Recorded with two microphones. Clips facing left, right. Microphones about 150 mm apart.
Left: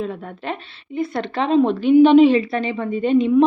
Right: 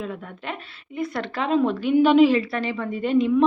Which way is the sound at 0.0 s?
35° left (ahead or behind).